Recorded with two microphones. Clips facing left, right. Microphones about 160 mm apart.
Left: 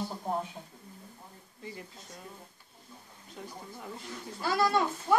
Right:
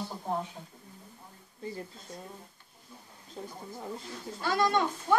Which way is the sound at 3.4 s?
30° right (ahead or behind).